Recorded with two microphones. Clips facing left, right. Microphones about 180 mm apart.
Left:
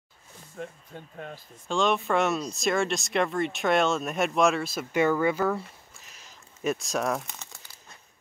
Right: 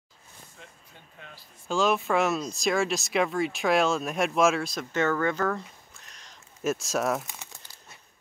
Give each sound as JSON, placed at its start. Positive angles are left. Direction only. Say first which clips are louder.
{"t": 0.6, "sound": "speech", "louder": "left 17 dB", "side_deg": 50}
{"t": 1.7, "sound": "speech", "louder": "even", "side_deg": -5}
{"t": 5.9, "sound": "crumpling", "louder": "even", "side_deg": 5}